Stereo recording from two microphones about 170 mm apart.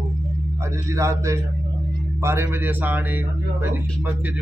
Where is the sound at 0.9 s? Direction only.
15° right (ahead or behind).